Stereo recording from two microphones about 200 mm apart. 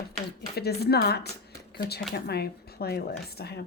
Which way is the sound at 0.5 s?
55° left (ahead or behind).